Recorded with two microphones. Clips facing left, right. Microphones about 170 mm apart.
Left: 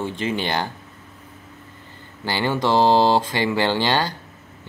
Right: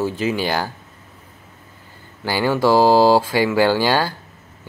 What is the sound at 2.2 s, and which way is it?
Speech, 10° right (ahead or behind).